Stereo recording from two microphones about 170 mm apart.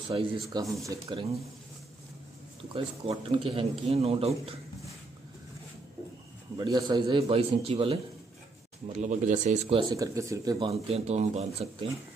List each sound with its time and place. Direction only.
0.1 s a man's voice: 30° right (ahead or behind)
0.5 s speech: 20° right (ahead or behind)
2.7 s a man's voice: 35° right (ahead or behind)
6.5 s a man's voice: 25° right (ahead or behind); by 9.6 s 50° right (ahead or behind)
9.7 s a man's voice: 30° right (ahead or behind)
9.9 s speech: 20° right (ahead or behind)
10.7 s a man's voice: 40° right (ahead or behind)